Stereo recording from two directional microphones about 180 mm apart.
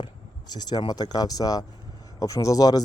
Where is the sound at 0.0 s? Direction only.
25° left (ahead or behind).